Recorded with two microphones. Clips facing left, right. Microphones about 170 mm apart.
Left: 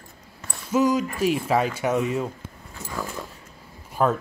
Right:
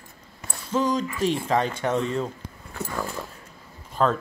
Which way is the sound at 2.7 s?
60° right (ahead or behind).